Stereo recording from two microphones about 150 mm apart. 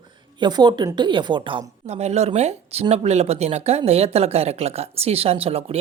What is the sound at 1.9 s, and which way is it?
A woman's voice, 45° right (ahead or behind).